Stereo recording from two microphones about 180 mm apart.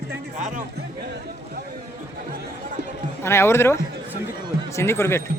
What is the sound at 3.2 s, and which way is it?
A man's voice, 15° left (ahead or behind).